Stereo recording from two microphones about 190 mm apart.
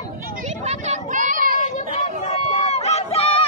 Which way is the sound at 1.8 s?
35° left (ahead or behind).